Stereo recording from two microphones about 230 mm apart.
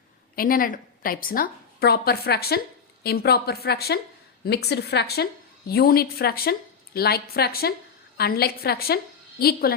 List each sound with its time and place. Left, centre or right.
0.3 s a woman's voice: left